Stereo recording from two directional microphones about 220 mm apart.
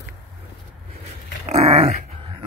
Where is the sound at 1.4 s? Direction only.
30° right (ahead or behind).